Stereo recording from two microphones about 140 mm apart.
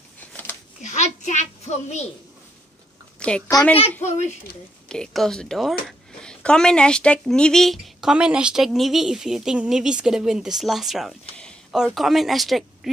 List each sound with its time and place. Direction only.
0.8 s a child's voice: 55° left (ahead or behind)
3.2 s a sound: 5° left (ahead or behind)
4.8 s a woman's voice: 5° left (ahead or behind)